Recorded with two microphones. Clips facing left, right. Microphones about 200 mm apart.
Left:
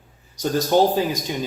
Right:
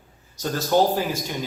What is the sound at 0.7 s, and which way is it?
Speech, 20° left (ahead or behind).